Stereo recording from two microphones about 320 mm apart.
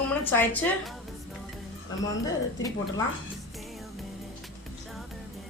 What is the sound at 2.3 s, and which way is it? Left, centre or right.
Speech, centre.